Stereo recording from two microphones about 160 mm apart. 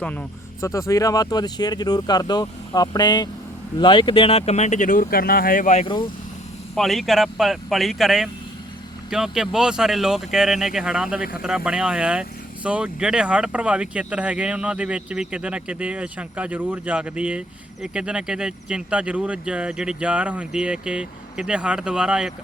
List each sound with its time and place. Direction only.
0.0 s speech: 10° left (ahead or behind)
0.7 s speech: 20° left (ahead or behind); by 5.8 s 55° left (ahead or behind)
5.8 s speech: 30° left (ahead or behind)
6.7 s speech: centre (ahead or behind)